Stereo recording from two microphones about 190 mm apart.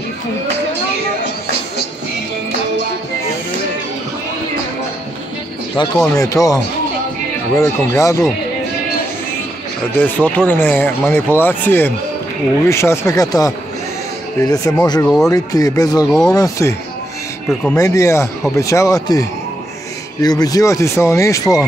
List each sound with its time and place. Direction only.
5.8 s speech: 25° left (ahead or behind)
9.9 s speech: 10° left (ahead or behind)
16.1 s speech: centre (ahead or behind)
16.3 s speech: 15° left (ahead or behind)
17.7 s speech: 15° left (ahead or behind)